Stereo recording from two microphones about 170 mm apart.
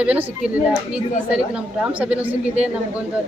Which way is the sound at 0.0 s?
10° right (ahead or behind).